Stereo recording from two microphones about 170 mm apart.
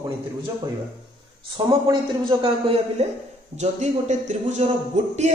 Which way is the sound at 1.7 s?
30° right (ahead or behind).